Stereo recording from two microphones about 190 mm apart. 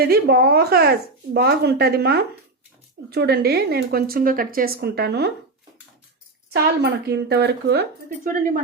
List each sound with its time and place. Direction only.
0.0 s a woman's voice: 55° right (ahead or behind)
6.5 s a woman's voice: 60° right (ahead or behind)